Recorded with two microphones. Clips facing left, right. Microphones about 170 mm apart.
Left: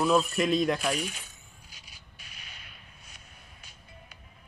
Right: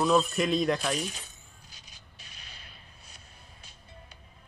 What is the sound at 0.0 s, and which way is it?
Speech, centre (ahead or behind).